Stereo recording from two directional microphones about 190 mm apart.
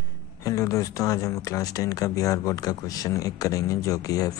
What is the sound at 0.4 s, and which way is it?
Speech, 15° left (ahead or behind).